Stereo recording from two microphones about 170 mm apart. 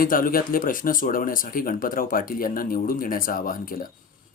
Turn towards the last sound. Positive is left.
turn(degrees=55)  # may be behind; listen again after turning